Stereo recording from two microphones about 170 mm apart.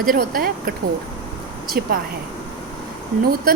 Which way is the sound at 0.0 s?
55° right (ahead or behind).